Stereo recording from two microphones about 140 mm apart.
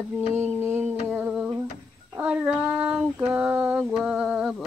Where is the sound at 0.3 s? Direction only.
15° right (ahead or behind).